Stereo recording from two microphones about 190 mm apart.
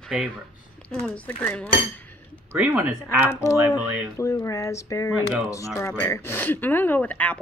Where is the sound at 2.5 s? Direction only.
10° right (ahead or behind).